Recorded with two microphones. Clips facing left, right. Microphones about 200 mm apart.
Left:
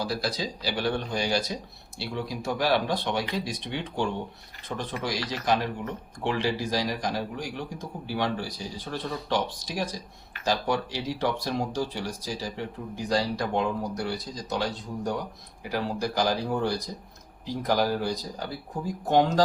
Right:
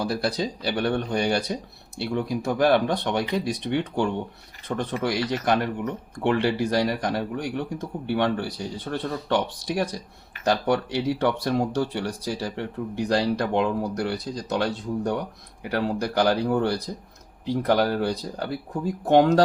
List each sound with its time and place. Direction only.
0.0 s speech: 60° right (ahead or behind)